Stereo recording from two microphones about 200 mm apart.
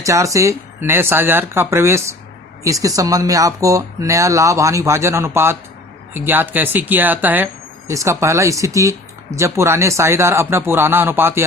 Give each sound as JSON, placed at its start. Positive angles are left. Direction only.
{"t": 0.0, "sound": "speech", "side_deg": -15}